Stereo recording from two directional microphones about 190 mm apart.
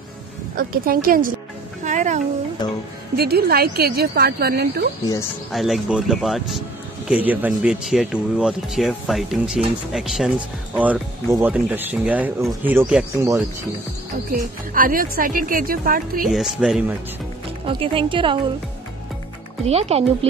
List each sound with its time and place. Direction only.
0.6 s speech: 50° right (ahead or behind)
1.9 s music: 40° right (ahead or behind)
3.2 s a woman's voice: 55° right (ahead or behind)
5.5 s speech: centre (ahead or behind)
14.7 s speech: 45° right (ahead or behind)
16.3 s speech: centre (ahead or behind)
17.6 s speech: 25° right (ahead or behind)
19.6 s speech: 30° right (ahead or behind)